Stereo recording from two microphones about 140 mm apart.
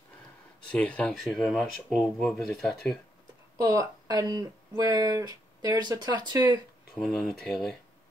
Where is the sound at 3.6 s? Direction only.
25° right (ahead or behind).